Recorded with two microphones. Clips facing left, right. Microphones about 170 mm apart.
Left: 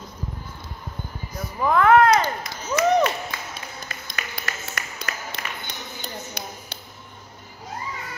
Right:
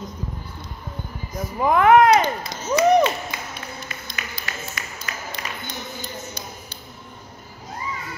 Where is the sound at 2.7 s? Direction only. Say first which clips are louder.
Right 3 dB; 20° right (ahead or behind).